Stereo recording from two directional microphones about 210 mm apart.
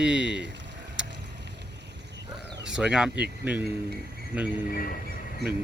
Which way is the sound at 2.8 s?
5° right (ahead or behind).